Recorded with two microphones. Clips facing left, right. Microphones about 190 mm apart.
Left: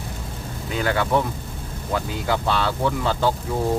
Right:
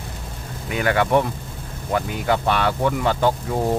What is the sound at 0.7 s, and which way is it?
Speech, 15° right (ahead or behind).